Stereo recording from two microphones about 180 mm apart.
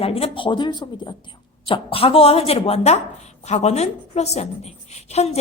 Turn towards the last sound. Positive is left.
turn(degrees=35)  # may be behind; listen again after turning